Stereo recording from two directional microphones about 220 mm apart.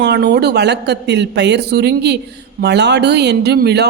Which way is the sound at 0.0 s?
50° right (ahead or behind).